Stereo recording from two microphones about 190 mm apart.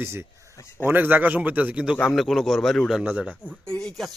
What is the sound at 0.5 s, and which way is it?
Speech, 15° left (ahead or behind).